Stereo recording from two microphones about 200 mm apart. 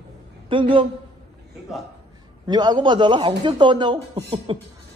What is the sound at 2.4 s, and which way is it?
Speech, 20° right (ahead or behind).